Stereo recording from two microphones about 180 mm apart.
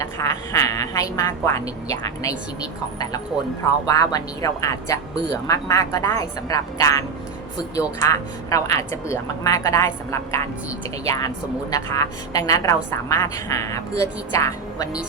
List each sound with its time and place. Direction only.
0.0 s a woman's voice: 15° left (ahead or behind)
3.8 s a woman's voice: 20° left (ahead or behind)